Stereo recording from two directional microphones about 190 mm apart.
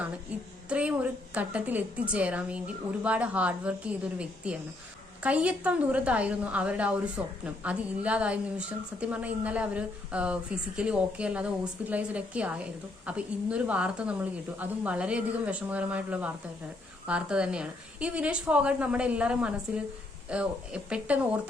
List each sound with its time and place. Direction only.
0.7 s a woman's voice: 5° right (ahead or behind)